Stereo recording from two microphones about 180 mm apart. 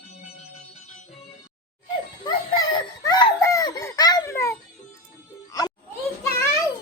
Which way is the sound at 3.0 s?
20° left (ahead or behind).